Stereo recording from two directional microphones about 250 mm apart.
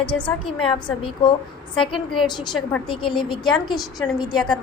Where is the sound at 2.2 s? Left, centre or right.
Centre.